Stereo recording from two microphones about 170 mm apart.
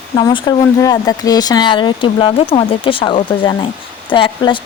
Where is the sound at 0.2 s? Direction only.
25° left (ahead or behind).